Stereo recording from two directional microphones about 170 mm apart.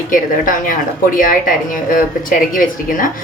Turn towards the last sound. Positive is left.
turn(degrees=50)  # may be behind; listen again after turning